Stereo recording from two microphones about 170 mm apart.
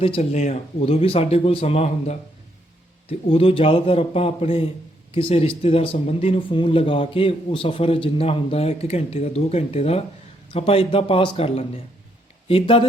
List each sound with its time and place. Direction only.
0.0 s speech: 35° left (ahead or behind)